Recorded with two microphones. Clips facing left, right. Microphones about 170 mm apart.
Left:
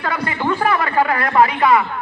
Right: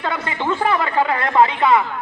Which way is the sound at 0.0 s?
25° right (ahead or behind).